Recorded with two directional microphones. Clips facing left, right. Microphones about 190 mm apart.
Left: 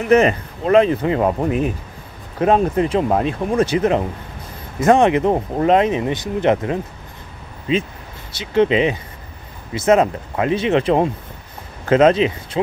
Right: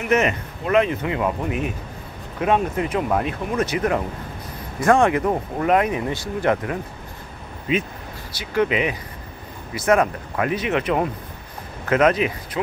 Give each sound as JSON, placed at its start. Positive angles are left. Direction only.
{"t": 0.1, "sound": "speech", "side_deg": 30}